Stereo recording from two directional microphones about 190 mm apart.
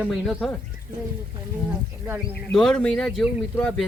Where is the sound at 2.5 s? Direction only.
5° left (ahead or behind).